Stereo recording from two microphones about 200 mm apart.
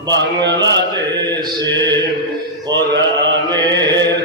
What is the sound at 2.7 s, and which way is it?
Mantra, 65° right (ahead or behind).